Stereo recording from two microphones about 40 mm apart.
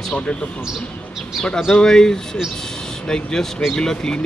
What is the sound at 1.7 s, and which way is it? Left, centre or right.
Speech, centre.